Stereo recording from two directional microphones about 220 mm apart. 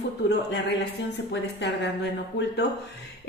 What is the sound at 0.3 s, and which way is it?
A woman's voice, 50° left (ahead or behind).